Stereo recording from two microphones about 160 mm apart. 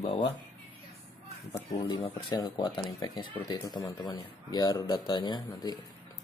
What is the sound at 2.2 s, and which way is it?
Speech, 25° left (ahead or behind).